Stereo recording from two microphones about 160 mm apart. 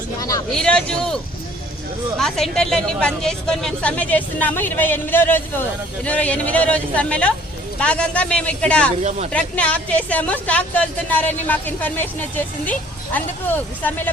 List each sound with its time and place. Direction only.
0.2 s vehicle: 20° left (ahead or behind)
0.5 s speech: 5° left (ahead or behind)
9.0 s speech: 45° right (ahead or behind)
9.3 s speech: 10° left (ahead or behind)